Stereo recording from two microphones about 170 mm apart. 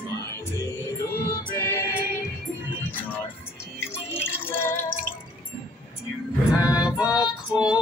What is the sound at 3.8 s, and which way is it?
Drip, 15° left (ahead or behind).